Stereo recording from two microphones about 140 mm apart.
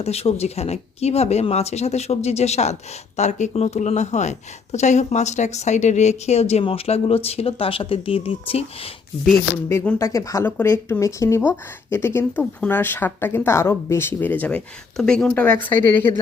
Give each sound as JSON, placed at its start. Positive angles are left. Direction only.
{"t": 0.0, "sound": "speech", "side_deg": 50}
{"t": 9.6, "sound": "speech", "side_deg": 20}